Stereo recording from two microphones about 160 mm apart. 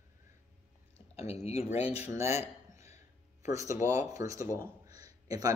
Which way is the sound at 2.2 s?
15° right (ahead or behind).